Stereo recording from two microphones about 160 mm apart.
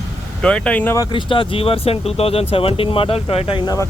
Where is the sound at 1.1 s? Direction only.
30° left (ahead or behind).